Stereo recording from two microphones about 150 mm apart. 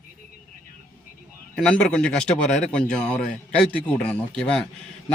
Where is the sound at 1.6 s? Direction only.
5° left (ahead or behind).